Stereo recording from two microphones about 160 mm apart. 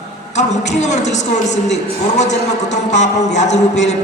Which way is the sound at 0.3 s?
45° left (ahead or behind).